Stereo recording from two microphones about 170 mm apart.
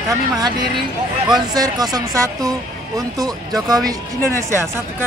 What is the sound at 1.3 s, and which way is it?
A man's voice, 20° right (ahead or behind).